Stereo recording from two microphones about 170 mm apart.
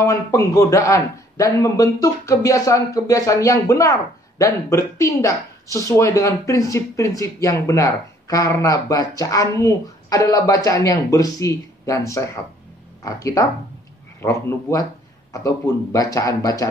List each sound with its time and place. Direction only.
0.0 s speech: 20° left (ahead or behind)